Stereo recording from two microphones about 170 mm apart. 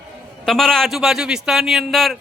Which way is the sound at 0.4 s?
Centre (ahead or behind).